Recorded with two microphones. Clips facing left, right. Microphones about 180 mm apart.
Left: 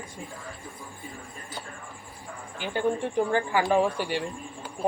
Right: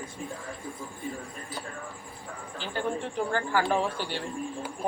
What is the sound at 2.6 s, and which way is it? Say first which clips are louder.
Speech: left 5 dB; 15° left (ahead or behind).